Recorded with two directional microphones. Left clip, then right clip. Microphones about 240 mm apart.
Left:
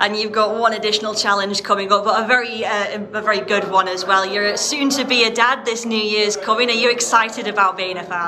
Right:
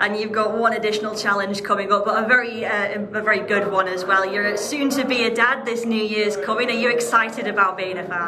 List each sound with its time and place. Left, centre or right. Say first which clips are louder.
0.0 s a woman's voice: left 3 dB; centre